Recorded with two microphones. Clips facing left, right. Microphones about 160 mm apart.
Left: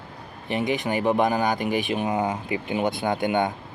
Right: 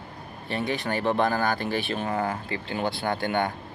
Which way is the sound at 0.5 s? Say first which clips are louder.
Left 3 dB; 15° left (ahead or behind).